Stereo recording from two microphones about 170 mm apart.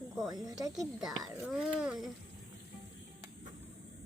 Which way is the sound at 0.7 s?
Centre (ahead or behind).